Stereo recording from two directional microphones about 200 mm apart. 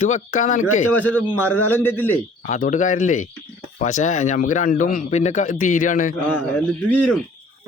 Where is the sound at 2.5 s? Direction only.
40° left (ahead or behind).